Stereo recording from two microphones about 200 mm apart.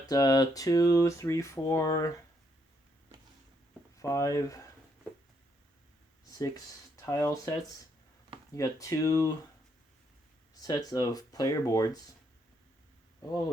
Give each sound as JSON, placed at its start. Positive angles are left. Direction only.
{"t": 0.0, "sound": "speech", "side_deg": 20}
{"t": 3.9, "sound": "speech", "side_deg": 15}
{"t": 6.9, "sound": "speech", "side_deg": 15}
{"t": 8.5, "sound": "speech", "side_deg": 15}
{"t": 10.5, "sound": "speech", "side_deg": 20}